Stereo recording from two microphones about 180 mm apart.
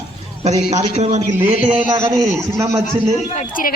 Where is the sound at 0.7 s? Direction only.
35° right (ahead or behind).